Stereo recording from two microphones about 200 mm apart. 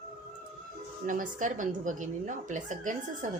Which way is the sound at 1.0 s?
40° right (ahead or behind).